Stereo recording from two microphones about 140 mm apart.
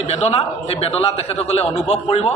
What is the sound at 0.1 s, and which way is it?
A man's voice, 45° left (ahead or behind).